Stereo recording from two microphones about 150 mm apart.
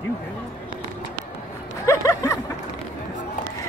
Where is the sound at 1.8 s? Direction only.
20° left (ahead or behind).